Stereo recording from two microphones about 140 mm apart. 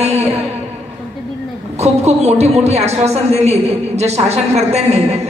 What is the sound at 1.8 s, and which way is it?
A woman's voice, 50° right (ahead or behind).